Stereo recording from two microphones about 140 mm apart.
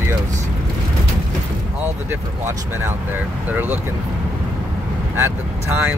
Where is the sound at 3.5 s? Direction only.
15° right (ahead or behind).